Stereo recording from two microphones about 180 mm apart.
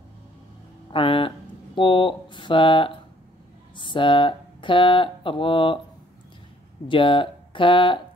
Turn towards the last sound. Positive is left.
turn(degrees=30)  # may be behind; listen again after turning